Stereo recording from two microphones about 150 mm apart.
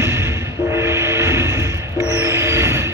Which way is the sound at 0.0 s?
15° right (ahead or behind).